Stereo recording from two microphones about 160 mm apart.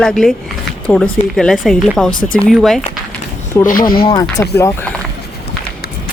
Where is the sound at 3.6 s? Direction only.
15° left (ahead or behind).